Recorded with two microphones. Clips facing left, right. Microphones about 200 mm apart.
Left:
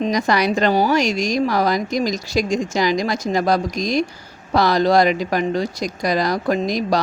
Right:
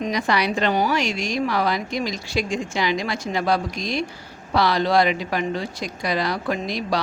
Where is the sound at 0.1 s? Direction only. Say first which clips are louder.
Left 4 dB; 40° left (ahead or behind).